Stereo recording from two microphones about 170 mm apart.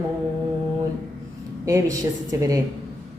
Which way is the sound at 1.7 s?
20° right (ahead or behind).